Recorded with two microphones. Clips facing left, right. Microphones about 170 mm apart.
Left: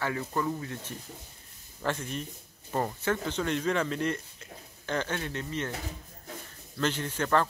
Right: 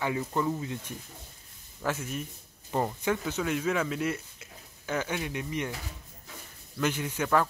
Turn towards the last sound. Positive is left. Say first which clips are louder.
# even
turn(degrees=-10)  # may be behind; listen again after turning